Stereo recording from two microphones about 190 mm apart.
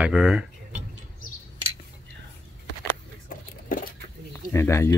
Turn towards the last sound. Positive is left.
turn(degrees=15)  # may be behind; listen again after turning